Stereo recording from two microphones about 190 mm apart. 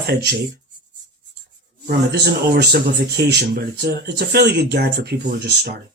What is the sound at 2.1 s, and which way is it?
Speech, 60° right (ahead or behind).